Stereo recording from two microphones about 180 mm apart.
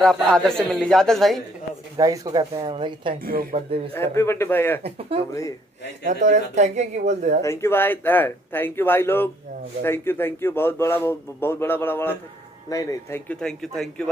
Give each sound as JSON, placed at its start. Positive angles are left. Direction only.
{"t": 0.0, "sound": "a man's voice", "side_deg": 5}
{"t": 2.0, "sound": "speech", "side_deg": -20}
{"t": 3.2, "sound": "speech", "side_deg": -55}
{"t": 3.5, "sound": "speech", "side_deg": -30}
{"t": 3.9, "sound": "a man's voice", "side_deg": 15}
{"t": 4.8, "sound": "speech", "side_deg": -35}
{"t": 7.4, "sound": "a man's voice", "side_deg": 15}